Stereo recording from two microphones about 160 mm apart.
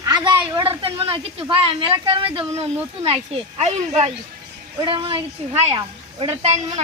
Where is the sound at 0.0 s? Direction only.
25° right (ahead or behind).